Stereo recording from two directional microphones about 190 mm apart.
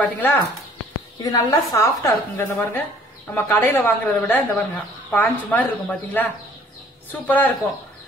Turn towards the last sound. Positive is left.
turn(degrees=10)  # may be behind; listen again after turning